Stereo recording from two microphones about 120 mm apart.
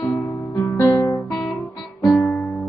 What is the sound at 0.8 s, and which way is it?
Guitar, 25° left (ahead or behind).